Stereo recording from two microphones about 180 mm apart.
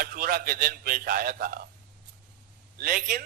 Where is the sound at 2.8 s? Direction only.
55° right (ahead or behind).